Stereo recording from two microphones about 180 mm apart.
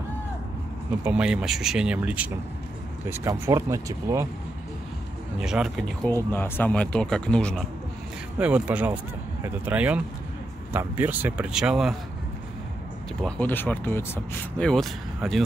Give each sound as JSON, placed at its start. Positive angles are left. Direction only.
{"t": 1.0, "sound": "speech", "side_deg": -5}
{"t": 5.4, "sound": "speech", "side_deg": -5}
{"t": 6.0, "sound": "speech", "side_deg": 15}
{"t": 8.4, "sound": "speech", "side_deg": -5}
{"t": 13.2, "sound": "speech", "side_deg": 10}